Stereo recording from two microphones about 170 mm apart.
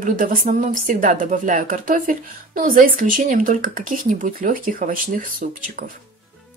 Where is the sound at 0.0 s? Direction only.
55° right (ahead or behind).